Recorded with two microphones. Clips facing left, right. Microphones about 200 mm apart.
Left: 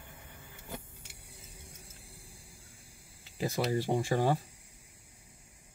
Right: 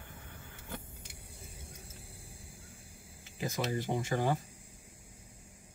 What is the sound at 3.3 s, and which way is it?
Speech, 35° left (ahead or behind).